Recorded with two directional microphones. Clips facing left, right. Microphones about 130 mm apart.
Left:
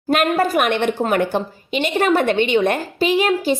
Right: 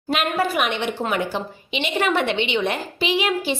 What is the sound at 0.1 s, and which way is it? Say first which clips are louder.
A woman's voice: left 5 dB; 45° left (ahead or behind).